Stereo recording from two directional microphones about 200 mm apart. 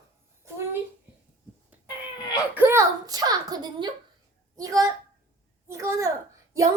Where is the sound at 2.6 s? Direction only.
15° right (ahead or behind).